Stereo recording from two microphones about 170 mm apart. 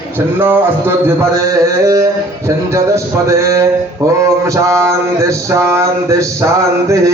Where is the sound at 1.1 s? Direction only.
20° right (ahead or behind).